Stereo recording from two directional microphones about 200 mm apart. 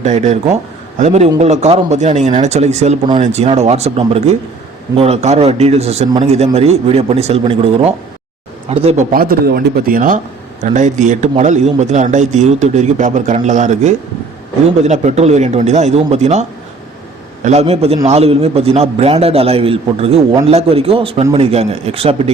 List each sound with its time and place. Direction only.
0.0 s a man's voice: 35° right (ahead or behind)
9.1 s a man's voice: 50° right (ahead or behind); by 22.3 s 30° right (ahead or behind)